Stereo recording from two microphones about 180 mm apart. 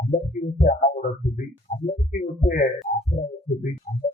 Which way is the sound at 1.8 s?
45° left (ahead or behind).